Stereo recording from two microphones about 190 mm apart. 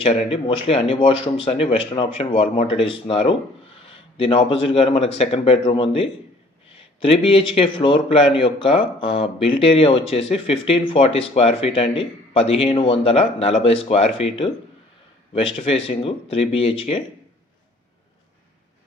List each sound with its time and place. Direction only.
0.0 s speech: 30° left (ahead or behind)